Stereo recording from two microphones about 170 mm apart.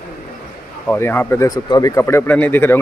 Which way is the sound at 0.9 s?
15° left (ahead or behind).